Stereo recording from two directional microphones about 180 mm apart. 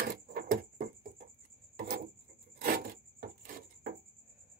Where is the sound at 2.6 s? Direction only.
55° right (ahead or behind).